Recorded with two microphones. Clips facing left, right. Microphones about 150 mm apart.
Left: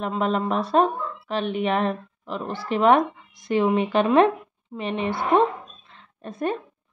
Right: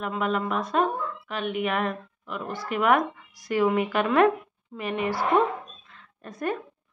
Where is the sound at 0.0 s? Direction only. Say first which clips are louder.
Left 3 dB; 30° left (ahead or behind).